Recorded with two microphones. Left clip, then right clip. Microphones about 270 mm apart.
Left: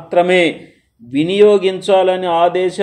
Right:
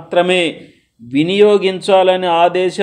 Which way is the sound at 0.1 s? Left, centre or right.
Centre.